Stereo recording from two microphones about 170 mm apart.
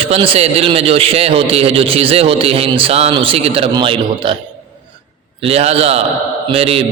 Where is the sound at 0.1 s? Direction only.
35° right (ahead or behind).